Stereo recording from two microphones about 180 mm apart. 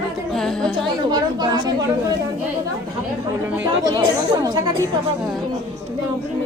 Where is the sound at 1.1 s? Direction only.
25° right (ahead or behind).